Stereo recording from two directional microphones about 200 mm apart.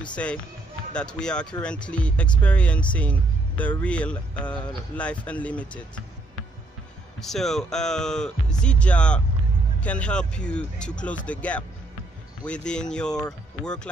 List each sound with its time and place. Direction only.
0.0 s speech: 5° left (ahead or behind)
7.2 s speech: centre (ahead or behind)